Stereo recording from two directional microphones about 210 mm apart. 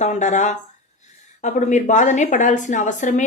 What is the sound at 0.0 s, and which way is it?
A woman's voice, 35° left (ahead or behind).